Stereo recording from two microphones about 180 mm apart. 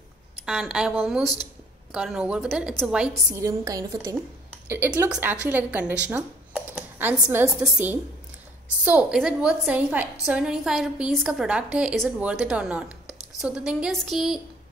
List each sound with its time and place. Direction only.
0.5 s a woman's voice: 5° right (ahead or behind)
3.3 s a woman's voice: 20° right (ahead or behind)
6.0 s computer keyboard: 10° right (ahead or behind)
7.6 s a woman's voice: 10° right (ahead or behind)